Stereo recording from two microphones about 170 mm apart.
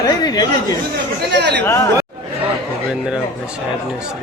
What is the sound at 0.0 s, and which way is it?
Speech, 25° left (ahead or behind).